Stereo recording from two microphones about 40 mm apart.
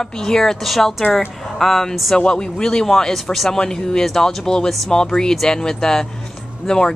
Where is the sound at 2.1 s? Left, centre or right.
Left.